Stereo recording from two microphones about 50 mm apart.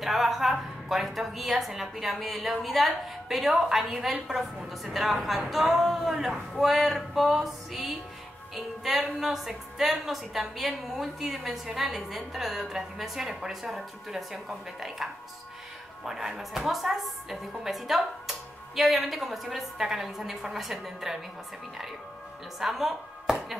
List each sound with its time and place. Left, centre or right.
0.0 s a woman's voice: centre
16.1 s a woman's voice: centre
22.6 s speech: centre